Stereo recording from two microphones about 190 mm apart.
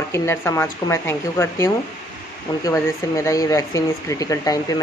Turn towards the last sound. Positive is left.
turn(degrees=20)  # may be behind; listen again after turning